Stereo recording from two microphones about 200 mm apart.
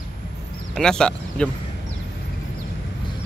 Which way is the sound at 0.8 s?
5° left (ahead or behind).